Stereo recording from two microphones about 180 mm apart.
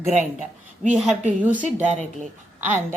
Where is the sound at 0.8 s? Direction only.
5° right (ahead or behind).